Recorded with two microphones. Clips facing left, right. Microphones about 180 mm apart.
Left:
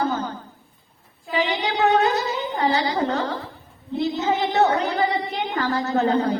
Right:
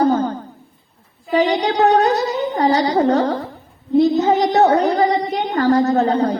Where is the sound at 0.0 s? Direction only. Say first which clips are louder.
Right 8 dB; 40° right (ahead or behind).